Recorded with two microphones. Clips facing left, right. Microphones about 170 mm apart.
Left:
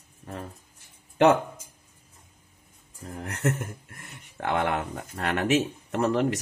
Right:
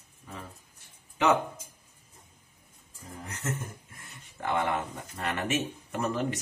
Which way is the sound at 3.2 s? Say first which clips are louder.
Left 8 dB; 75° left (ahead or behind).